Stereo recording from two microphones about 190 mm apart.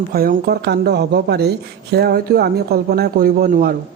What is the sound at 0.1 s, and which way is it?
Speech, 55° right (ahead or behind).